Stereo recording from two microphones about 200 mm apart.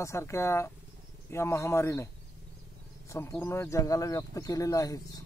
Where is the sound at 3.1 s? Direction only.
15° left (ahead or behind).